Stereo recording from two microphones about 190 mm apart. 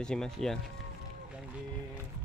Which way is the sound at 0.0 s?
5° left (ahead or behind).